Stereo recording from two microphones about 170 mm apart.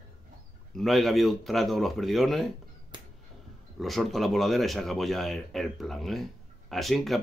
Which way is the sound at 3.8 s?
Centre (ahead or behind).